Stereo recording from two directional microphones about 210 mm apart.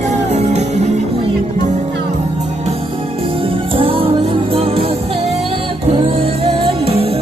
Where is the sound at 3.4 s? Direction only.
25° right (ahead or behind).